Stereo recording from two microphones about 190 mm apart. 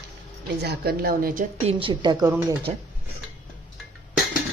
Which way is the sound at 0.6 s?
55° right (ahead or behind).